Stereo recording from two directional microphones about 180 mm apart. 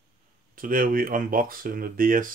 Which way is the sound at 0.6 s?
50° right (ahead or behind).